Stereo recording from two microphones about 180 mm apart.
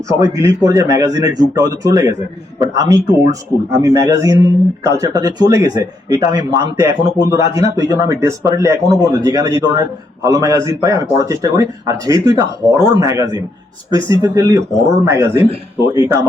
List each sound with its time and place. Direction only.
0.2 s speech: 20° right (ahead or behind)